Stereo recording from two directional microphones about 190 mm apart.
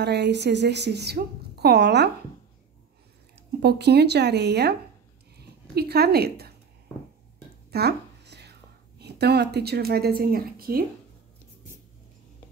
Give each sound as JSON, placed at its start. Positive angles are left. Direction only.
{"t": 0.0, "sound": "a woman's voice", "side_deg": -65}
{"t": 3.6, "sound": "a woman's voice", "side_deg": -60}
{"t": 7.7, "sound": "a sound", "side_deg": -60}
{"t": 9.0, "sound": "a woman's voice", "side_deg": -60}